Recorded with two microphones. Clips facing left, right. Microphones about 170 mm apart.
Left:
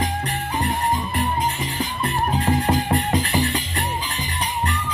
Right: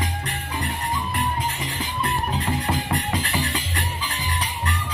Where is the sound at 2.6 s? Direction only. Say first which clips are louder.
Left 5 dB; 30° left (ahead or behind).